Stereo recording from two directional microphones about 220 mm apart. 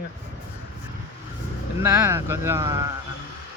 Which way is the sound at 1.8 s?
10° right (ahead or behind).